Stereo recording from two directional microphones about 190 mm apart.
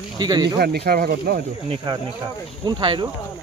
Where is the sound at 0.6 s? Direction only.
55° right (ahead or behind).